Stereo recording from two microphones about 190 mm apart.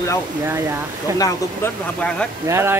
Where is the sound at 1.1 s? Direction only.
20° left (ahead or behind).